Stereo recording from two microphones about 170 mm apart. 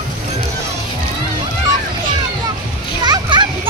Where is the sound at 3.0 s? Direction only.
25° right (ahead or behind).